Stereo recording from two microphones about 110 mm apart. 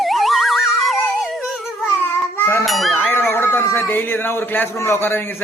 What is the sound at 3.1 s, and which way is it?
Speech, 20° left (ahead or behind).